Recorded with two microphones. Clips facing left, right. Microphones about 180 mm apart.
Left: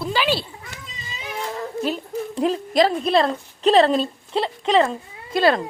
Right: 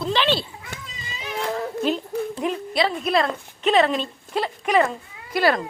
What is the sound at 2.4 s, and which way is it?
A woman's voice, 35° left (ahead or behind).